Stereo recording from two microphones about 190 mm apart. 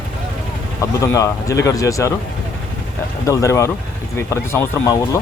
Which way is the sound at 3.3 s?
15° left (ahead or behind).